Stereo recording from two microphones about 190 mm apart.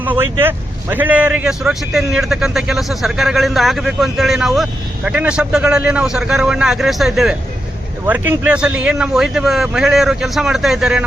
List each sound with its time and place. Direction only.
0.0 s a man's voice: 10° right (ahead or behind)